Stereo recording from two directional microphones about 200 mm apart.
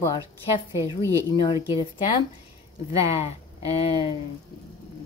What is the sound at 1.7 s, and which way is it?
Speech, 25° left (ahead or behind).